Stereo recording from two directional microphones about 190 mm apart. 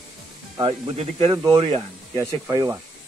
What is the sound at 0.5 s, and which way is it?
Speech, 20° right (ahead or behind).